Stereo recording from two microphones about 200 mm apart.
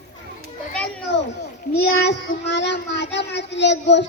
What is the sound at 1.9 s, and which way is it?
Speech, 65° left (ahead or behind).